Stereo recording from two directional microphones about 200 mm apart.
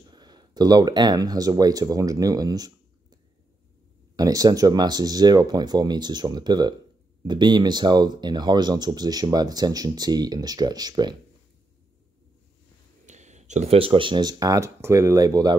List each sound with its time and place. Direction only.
0.1 s speech: 20° right (ahead or behind)
4.2 s speech: 20° right (ahead or behind)
13.0 s speech: 35° right (ahead or behind); by 15.5 s 20° right (ahead or behind)